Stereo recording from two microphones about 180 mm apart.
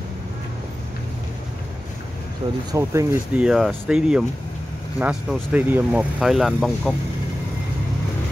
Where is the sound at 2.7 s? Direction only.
15° right (ahead or behind).